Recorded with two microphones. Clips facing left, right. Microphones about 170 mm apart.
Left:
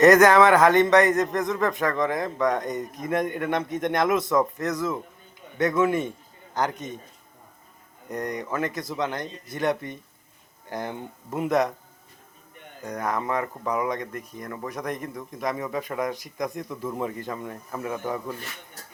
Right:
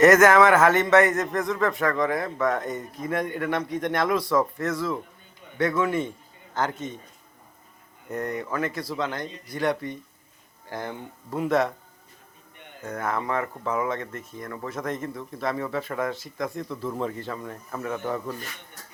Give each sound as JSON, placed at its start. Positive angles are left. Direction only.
{"t": 0.0, "sound": "a man's voice", "side_deg": 15}
{"t": 8.1, "sound": "a man's voice", "side_deg": 15}
{"t": 12.8, "sound": "speech", "side_deg": 15}
{"t": 14.1, "sound": "speech", "side_deg": -25}
{"t": 14.4, "sound": "speech", "side_deg": 15}